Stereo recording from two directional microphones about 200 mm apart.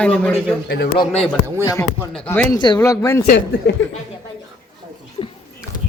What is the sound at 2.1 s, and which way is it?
Speech, 5° left (ahead or behind).